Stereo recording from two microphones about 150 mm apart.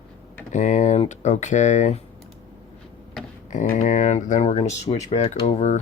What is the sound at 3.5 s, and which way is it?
Speech, 55° left (ahead or behind).